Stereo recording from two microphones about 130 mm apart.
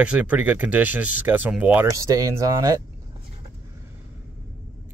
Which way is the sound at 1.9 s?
25° right (ahead or behind).